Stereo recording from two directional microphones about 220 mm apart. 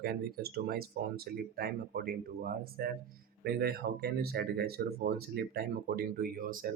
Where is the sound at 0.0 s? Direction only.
45° right (ahead or behind).